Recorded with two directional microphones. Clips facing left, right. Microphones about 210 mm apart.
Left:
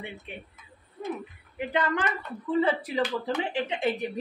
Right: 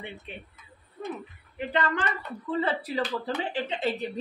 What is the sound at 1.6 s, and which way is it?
Speech, 15° left (ahead or behind).